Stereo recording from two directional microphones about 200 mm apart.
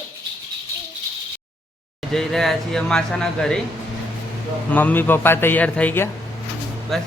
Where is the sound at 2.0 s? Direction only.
Centre (ahead or behind).